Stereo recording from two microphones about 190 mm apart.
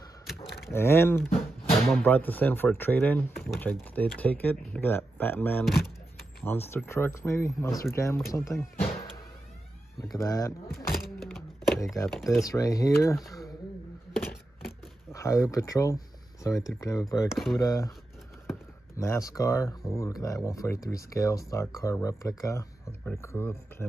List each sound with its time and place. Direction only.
0.7 s speech: 10° left (ahead or behind)
10.1 s speech: 15° left (ahead or behind)
10.7 s speech: 50° left (ahead or behind)
11.0 s thunk: centre (ahead or behind)
12.1 s speech: centre (ahead or behind)
12.4 s speech: 20° left (ahead or behind)
15.1 s speech: 15° left (ahead or behind)
17.3 s speech: centre (ahead or behind)
17.6 s speech: 20° left (ahead or behind)
18.9 s speech: 15° left (ahead or behind)